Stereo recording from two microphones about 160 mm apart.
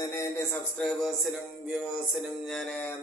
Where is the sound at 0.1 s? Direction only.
20° left (ahead or behind).